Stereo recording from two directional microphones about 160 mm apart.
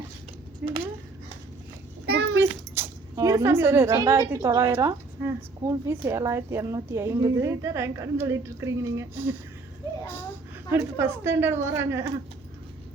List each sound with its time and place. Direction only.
0.6 s speech: 10° right (ahead or behind)
2.3 s speech: 15° right (ahead or behind)
10.7 s speech: 15° right (ahead or behind)